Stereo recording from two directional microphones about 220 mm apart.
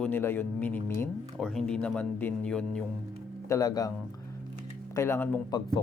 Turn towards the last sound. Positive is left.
turn(degrees=10)  # may be behind; listen again after turning